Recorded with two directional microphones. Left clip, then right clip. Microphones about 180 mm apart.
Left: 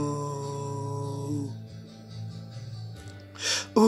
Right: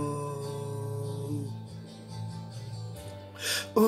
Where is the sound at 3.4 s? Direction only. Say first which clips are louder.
Left 2 dB; 15° left (ahead or behind).